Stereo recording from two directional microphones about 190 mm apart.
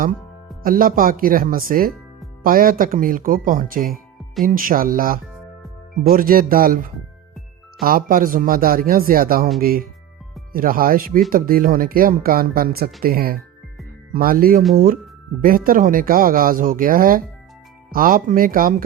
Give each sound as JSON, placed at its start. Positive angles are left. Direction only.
{"t": 0.6, "sound": "speech", "side_deg": -50}